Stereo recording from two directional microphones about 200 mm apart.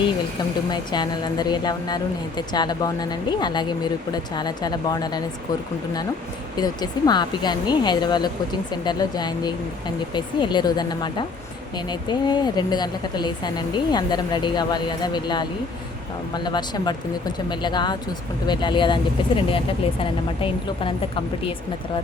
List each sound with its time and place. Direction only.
0.7 s speech: 20° left (ahead or behind)
6.6 s speech: 20° left (ahead or behind)